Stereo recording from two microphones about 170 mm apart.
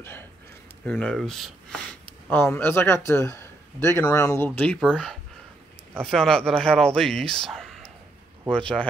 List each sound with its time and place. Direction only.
0.8 s speech: 10° left (ahead or behind)
2.2 s a man's voice: 15° left (ahead or behind)
4.5 s a man's voice: 5° left (ahead or behind)
6.0 s a man's voice: 5° left (ahead or behind)